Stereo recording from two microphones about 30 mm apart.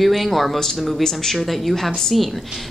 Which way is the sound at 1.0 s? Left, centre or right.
Centre.